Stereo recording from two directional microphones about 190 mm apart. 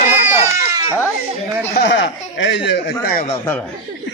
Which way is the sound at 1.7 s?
65° left (ahead or behind).